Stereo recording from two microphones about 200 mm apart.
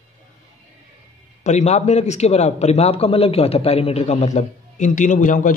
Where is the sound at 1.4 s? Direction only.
35° left (ahead or behind).